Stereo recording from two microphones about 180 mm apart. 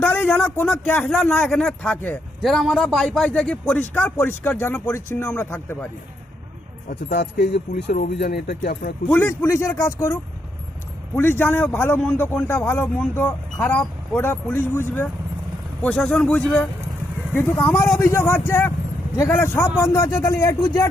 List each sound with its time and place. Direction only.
0.0 s a man's voice: 10° left (ahead or behind)
7.2 s speech: 65° left (ahead or behind)
9.0 s a man's voice: 10° left (ahead or behind)